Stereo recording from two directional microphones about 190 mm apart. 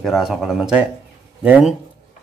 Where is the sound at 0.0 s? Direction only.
Centre (ahead or behind).